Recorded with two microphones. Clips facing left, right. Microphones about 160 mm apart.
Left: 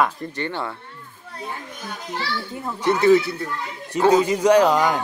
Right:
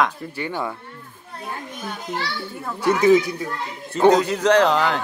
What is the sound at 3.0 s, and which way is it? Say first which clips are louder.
Speech: even; 15° right (ahead or behind).